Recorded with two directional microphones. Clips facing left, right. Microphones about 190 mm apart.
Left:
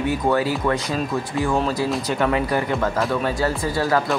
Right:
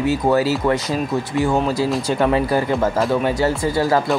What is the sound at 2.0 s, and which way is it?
A man's voice, 30° right (ahead or behind).